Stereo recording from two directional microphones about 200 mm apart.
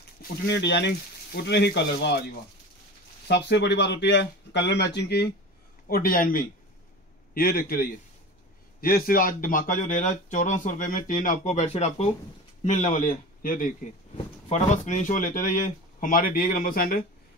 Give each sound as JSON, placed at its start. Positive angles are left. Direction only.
{"t": 0.2, "sound": "speech", "side_deg": 60}
{"t": 3.3, "sound": "speech", "side_deg": 60}